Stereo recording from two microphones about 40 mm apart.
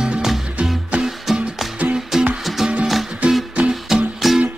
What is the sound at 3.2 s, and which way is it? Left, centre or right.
Music, right.